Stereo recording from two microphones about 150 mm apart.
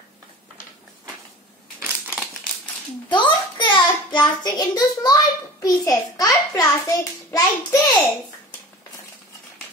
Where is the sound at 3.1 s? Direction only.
30° left (ahead or behind).